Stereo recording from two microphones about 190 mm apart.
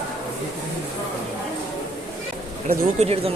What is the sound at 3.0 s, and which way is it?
Speech, 30° right (ahead or behind).